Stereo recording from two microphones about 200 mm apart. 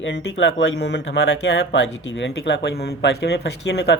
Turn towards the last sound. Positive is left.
turn(degrees=60)  # may be behind; listen again after turning